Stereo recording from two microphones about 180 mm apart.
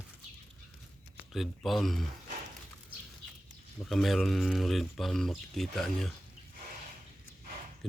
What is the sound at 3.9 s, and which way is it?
Speech, centre (ahead or behind).